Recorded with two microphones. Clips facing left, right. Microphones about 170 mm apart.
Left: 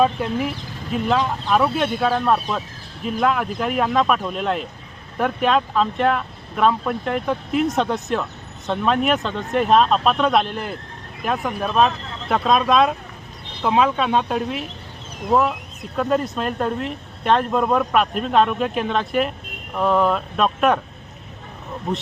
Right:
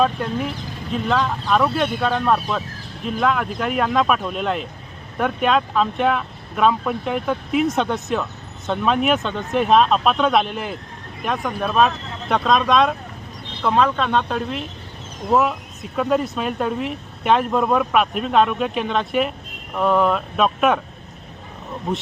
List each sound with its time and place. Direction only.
0.0 s speech: 5° left (ahead or behind)